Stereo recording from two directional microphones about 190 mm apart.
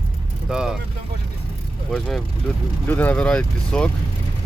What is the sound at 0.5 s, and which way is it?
Speech, 5° right (ahead or behind).